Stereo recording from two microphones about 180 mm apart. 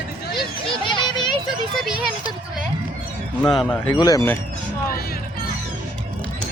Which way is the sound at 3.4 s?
Centre (ahead or behind).